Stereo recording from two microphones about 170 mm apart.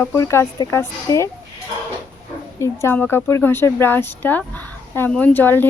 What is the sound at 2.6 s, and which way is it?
Speech, 15° left (ahead or behind).